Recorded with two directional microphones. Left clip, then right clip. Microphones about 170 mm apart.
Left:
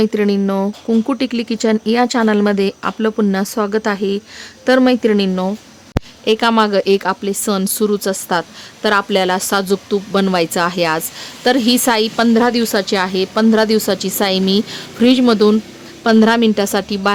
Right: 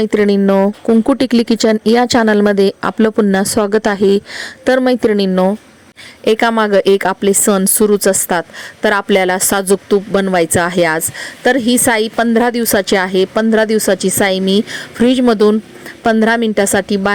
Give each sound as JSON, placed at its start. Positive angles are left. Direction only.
{"t": 0.0, "sound": "a woman's voice", "side_deg": -30}